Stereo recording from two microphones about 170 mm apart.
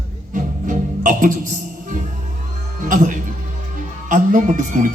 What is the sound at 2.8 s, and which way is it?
A man's voice, 50° right (ahead or behind).